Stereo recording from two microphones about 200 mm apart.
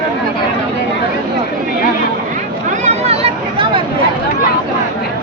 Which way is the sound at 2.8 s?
30° right (ahead or behind).